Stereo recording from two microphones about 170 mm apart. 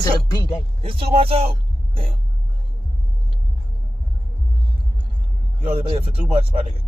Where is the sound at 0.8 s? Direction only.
35° right (ahead or behind).